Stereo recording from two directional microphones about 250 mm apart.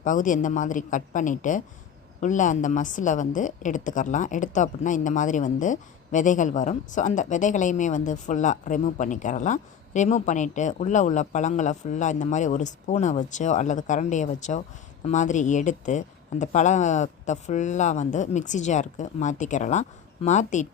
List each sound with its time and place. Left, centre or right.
0.0 s a woman's voice: left